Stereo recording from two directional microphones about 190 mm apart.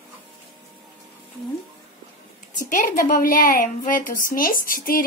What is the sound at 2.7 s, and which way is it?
A woman's voice, 45° left (ahead or behind).